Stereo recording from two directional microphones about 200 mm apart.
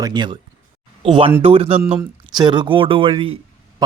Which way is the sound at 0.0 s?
20° right (ahead or behind).